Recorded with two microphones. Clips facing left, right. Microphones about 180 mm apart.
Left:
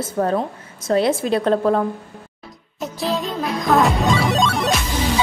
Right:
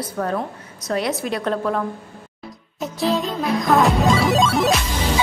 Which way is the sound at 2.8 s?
Centre (ahead or behind).